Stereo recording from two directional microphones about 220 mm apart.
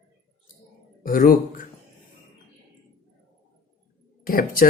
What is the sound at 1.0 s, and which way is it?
Speech, 40° left (ahead or behind).